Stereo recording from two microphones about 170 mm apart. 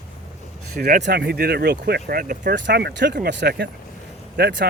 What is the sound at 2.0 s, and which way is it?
Speech, 60° right (ahead or behind).